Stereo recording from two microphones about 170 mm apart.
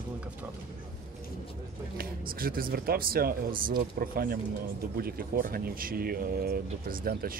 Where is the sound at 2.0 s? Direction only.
60° right (ahead or behind).